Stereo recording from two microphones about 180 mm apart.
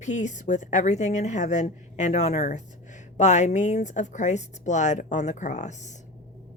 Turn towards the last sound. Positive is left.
turn(degrees=40)  # may be behind; listen again after turning